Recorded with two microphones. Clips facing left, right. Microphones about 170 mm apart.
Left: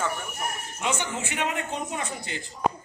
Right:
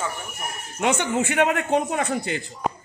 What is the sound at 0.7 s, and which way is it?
A man's voice, 60° right (ahead or behind).